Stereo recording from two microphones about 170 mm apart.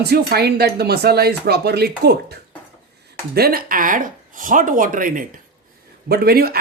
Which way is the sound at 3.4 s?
60° right (ahead or behind).